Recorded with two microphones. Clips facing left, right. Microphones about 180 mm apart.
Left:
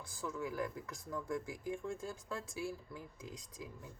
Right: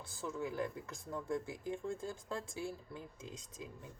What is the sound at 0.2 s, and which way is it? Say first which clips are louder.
Speech: right 1 dB; 25° right (ahead or behind).